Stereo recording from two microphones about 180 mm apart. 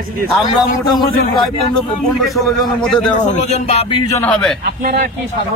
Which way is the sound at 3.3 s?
40° left (ahead or behind).